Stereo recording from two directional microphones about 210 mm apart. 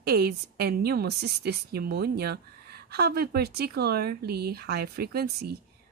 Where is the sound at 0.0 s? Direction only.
50° right (ahead or behind).